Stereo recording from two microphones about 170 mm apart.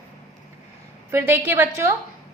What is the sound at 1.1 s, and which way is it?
Speech, 15° right (ahead or behind).